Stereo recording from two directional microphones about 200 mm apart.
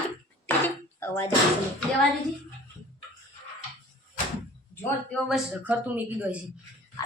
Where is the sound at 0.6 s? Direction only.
10° left (ahead or behind).